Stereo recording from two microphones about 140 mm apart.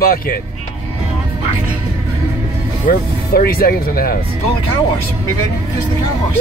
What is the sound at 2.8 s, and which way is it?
Speech, 90° left.